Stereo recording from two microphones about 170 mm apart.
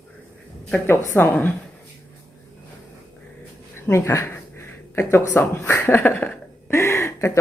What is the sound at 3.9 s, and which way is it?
Speech, 15° left (ahead or behind).